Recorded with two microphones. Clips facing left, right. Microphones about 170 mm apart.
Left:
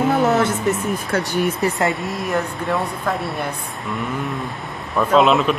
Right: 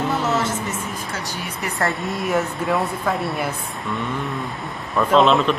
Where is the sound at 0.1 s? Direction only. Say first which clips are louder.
Left 5 dB; 55° left (ahead or behind).